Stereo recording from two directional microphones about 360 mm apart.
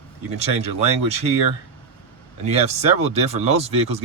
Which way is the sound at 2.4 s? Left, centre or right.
Centre.